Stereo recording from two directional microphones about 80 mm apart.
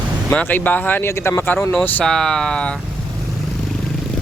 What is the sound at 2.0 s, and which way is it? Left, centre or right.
Speech, centre.